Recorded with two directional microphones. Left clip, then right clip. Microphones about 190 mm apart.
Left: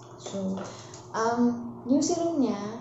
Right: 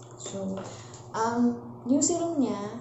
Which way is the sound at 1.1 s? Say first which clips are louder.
Left 1 dB; 5° right (ahead or behind).